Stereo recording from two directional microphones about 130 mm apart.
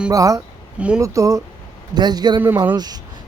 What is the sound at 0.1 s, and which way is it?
Speech, 25° right (ahead or behind).